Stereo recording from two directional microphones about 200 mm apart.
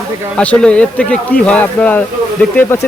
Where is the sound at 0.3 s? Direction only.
5° left (ahead or behind).